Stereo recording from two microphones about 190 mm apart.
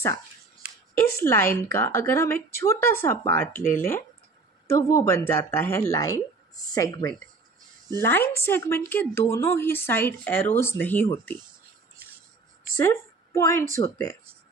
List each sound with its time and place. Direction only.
1.1 s speech: 15° left (ahead or behind)
12.7 s a woman's voice: 15° left (ahead or behind)